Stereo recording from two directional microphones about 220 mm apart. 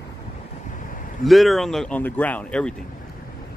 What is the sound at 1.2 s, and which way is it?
Speech, centre (ahead or behind).